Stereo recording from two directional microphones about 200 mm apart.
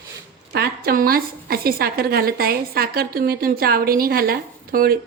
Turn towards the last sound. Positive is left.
turn(degrees=-45)  # may be behind; listen again after turning